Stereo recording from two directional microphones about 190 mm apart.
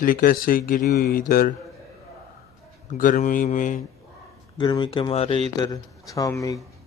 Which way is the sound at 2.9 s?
45° left (ahead or behind).